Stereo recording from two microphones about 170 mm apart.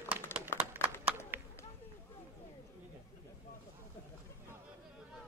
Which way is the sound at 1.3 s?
10° right (ahead or behind).